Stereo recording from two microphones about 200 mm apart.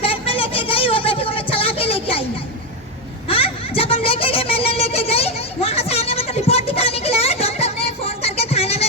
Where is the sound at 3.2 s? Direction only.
30° left (ahead or behind).